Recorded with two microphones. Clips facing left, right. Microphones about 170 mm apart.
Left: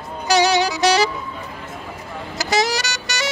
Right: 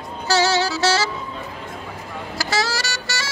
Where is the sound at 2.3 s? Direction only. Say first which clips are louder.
Left 4 dB; 20° left (ahead or behind).